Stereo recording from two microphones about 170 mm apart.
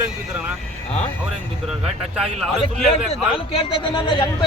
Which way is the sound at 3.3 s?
35° left (ahead or behind).